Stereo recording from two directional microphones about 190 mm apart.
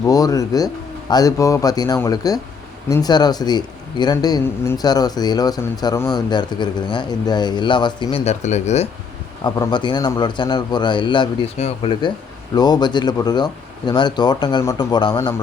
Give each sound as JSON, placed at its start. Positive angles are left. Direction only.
{"t": 0.0, "sound": "speech", "side_deg": 20}
{"t": 9.4, "sound": "speech", "side_deg": 20}